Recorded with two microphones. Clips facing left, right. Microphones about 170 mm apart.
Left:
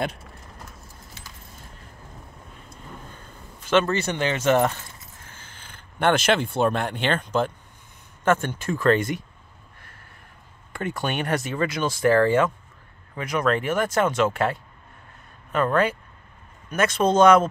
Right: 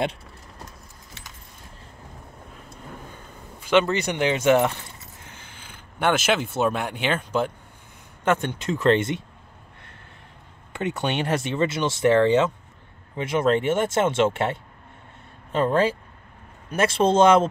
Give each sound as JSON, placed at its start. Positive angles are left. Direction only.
{"t": 3.6, "sound": "speech", "side_deg": -15}
{"t": 5.2, "sound": "a sound", "side_deg": -15}
{"t": 6.5, "sound": "speech", "side_deg": -5}
{"t": 10.7, "sound": "speech", "side_deg": -20}